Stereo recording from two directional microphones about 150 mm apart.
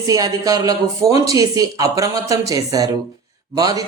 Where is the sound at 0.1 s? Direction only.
25° right (ahead or behind).